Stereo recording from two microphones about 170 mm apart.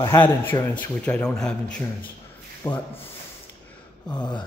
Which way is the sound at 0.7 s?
5° left (ahead or behind).